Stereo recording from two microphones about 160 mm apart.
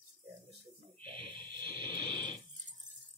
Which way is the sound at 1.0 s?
30° right (ahead or behind).